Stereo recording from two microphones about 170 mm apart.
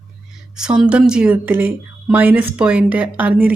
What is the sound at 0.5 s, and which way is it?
Speech, 5° right (ahead or behind).